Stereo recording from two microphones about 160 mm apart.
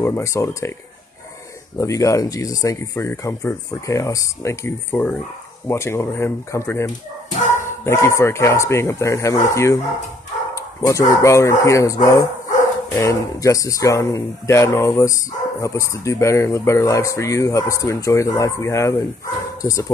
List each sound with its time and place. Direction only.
0.0 s speech: 15° left (ahead or behind)
1.8 s speech: 20° left (ahead or behind)